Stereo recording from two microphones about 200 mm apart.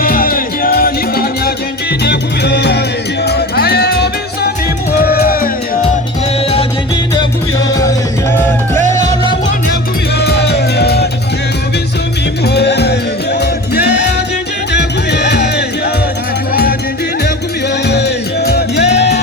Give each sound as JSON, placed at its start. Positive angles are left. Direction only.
{"t": 0.0, "sound": "music", "side_deg": 45}
{"t": 7.8, "sound": "music", "side_deg": 15}
{"t": 9.0, "sound": "music", "side_deg": -35}
{"t": 10.2, "sound": "music", "side_deg": 55}
{"t": 12.5, "sound": "music", "side_deg": 55}
{"t": 17.8, "sound": "music", "side_deg": 55}
{"t": 18.9, "sound": "music", "side_deg": 35}